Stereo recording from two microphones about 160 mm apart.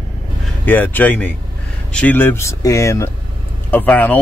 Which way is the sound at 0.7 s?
10° left (ahead or behind).